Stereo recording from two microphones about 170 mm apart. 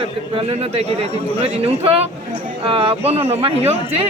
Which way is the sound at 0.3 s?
35° right (ahead or behind).